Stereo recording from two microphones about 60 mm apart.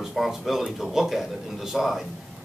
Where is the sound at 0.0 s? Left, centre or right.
Centre.